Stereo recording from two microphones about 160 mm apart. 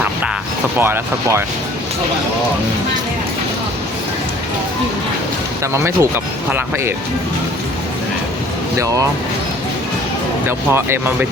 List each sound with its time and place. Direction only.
0.8 s speech: 15° right (ahead or behind)
5.7 s speech: 15° right (ahead or behind)
10.4 s speech: 15° right (ahead or behind)